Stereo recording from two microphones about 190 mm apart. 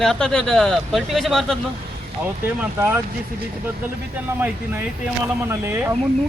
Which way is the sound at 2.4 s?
10° right (ahead or behind).